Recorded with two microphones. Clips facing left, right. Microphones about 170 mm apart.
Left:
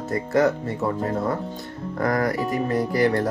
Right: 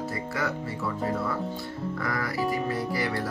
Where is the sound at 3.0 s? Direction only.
50° left (ahead or behind).